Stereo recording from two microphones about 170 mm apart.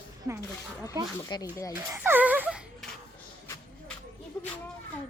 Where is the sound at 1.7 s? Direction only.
15° right (ahead or behind).